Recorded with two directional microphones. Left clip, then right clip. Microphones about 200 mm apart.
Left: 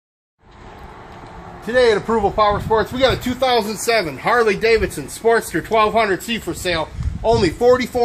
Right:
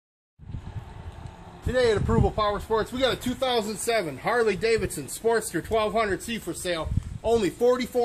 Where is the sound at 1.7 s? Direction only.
45° right (ahead or behind).